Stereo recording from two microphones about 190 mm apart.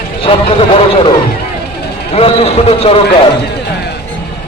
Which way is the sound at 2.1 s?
30° left (ahead or behind).